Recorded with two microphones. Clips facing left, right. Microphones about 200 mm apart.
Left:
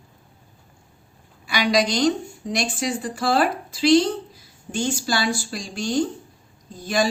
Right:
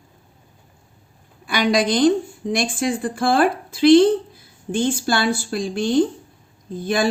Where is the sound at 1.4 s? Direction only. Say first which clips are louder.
Right 2 dB; 50° right (ahead or behind).